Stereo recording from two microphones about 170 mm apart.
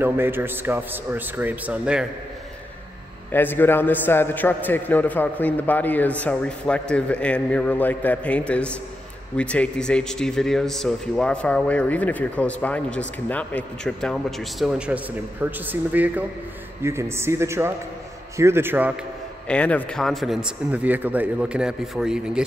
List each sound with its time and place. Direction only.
0.0 s a man's voice: 10° right (ahead or behind)
3.3 s a man's voice: 10° left (ahead or behind); by 18.9 s 10° right (ahead or behind)
19.4 s a man's voice: 5° left (ahead or behind)